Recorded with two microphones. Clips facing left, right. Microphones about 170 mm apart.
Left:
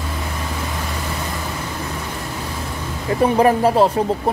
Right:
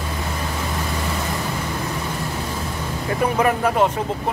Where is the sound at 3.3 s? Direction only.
30° left (ahead or behind).